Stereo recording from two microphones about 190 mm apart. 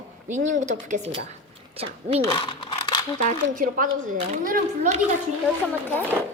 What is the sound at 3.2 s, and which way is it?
Speech, 45° right (ahead or behind).